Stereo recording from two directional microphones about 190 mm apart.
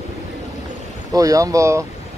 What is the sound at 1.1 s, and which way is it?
Speech, 20° right (ahead or behind).